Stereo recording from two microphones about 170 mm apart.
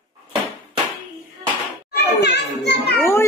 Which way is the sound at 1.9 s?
80° left.